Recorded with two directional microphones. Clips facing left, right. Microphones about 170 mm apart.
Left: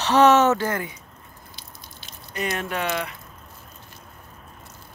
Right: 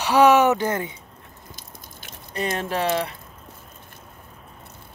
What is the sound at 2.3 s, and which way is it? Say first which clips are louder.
Speech: right 2 dB; 30° right (ahead or behind).